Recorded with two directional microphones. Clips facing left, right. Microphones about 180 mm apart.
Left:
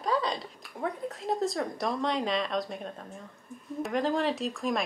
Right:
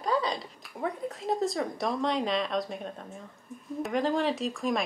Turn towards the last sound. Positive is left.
turn(degrees=0)  # may be behind; listen again after turning